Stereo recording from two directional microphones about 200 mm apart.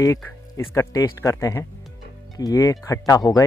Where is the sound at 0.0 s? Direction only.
15° left (ahead or behind).